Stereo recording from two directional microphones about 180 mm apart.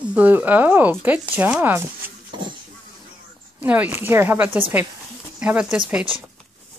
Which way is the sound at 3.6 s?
10° right (ahead or behind).